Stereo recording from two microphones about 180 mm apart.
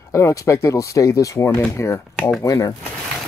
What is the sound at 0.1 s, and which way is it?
Speech, 15° left (ahead or behind).